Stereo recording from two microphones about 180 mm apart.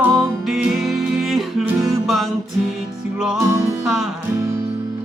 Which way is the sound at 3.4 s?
15° right (ahead or behind).